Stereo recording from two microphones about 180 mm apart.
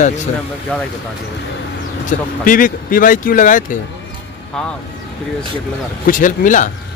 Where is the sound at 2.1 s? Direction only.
50° left (ahead or behind).